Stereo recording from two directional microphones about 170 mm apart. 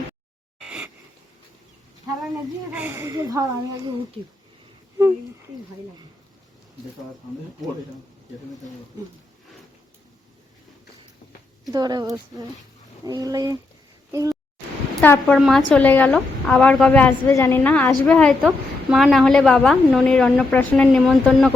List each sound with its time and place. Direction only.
0.6 s a sound: 5° right (ahead or behind)
2.1 s a sound: 20° right (ahead or behind)
2.7 s speech: 10° right (ahead or behind)
11.7 s speech: 25° right (ahead or behind)
15.0 s a woman's voice: 10° left (ahead or behind)
15.4 s a woman's voice: centre (ahead or behind)